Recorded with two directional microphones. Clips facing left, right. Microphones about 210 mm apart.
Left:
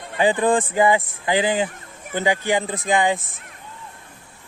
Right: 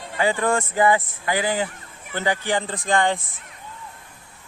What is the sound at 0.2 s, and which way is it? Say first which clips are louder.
Speech: left 3 dB; 15° left (ahead or behind).